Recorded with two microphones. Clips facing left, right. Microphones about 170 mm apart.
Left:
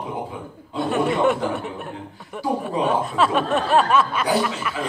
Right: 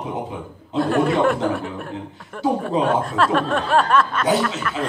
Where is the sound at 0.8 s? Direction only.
Centre (ahead or behind).